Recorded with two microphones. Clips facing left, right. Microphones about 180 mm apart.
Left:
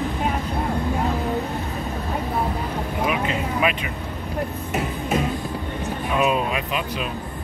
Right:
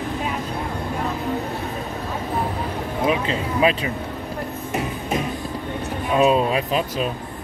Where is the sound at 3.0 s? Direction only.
30° right (ahead or behind).